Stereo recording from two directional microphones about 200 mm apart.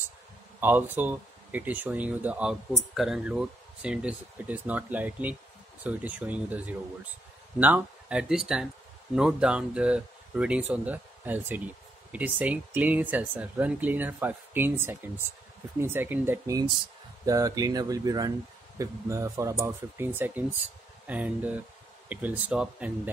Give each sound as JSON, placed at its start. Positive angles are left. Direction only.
{"t": 0.6, "sound": "speech", "side_deg": -10}